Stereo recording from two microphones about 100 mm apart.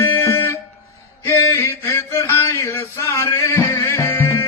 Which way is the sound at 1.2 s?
30° left (ahead or behind).